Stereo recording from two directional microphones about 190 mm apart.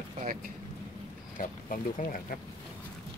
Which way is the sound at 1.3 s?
45° left (ahead or behind).